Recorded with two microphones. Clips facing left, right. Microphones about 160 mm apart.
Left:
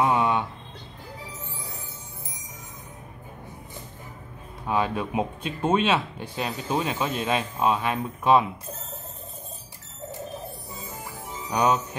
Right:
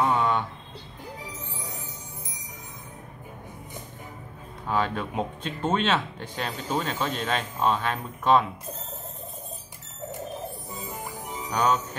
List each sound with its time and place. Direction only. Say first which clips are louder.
0.0 s a sound: left 1 dB; 15° left (ahead or behind)
1.2 s music: right 1 dB; 15° right (ahead or behind)
4.6 s speech: left 1 dB; 10° left (ahead or behind)
10.7 s music: right 2 dB; 20° right (ahead or behind)
11.5 s speech: left 2 dB; 15° left (ahead or behind)